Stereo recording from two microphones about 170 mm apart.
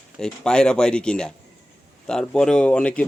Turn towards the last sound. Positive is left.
turn(degrees=5)  # may be behind; listen again after turning